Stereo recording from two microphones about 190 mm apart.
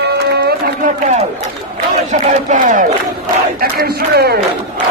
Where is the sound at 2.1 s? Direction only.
45° right (ahead or behind).